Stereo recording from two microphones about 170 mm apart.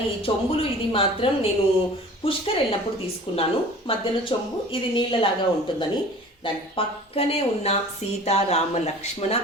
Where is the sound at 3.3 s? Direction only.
30° left (ahead or behind).